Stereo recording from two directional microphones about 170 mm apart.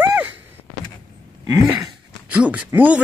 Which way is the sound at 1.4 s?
20° right (ahead or behind).